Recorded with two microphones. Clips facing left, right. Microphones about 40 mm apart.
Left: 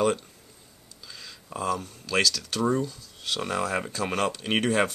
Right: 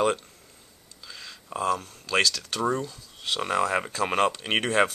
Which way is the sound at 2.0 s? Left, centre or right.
Centre.